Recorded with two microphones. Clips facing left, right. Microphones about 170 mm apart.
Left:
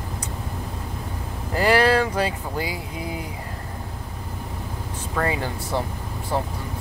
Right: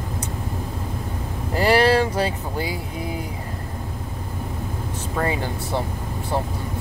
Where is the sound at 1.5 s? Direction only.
25° right (ahead or behind).